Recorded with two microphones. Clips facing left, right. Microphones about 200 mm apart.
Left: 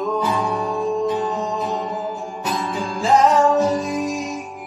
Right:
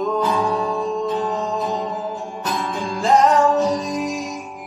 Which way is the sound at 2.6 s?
Centre (ahead or behind).